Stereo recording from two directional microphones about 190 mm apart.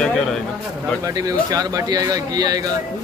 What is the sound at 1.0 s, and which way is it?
Speech, 20° right (ahead or behind).